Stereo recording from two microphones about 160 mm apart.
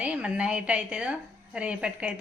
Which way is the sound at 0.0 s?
5° right (ahead or behind).